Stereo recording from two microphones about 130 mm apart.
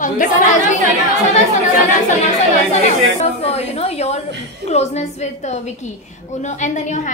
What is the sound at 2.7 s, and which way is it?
A woman's voice, 55° left (ahead or behind).